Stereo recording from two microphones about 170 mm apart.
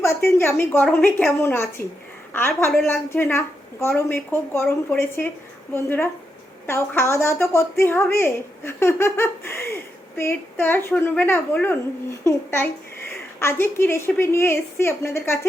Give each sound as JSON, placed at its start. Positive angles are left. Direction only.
{"t": 0.0, "sound": "a woman's voice", "side_deg": 15}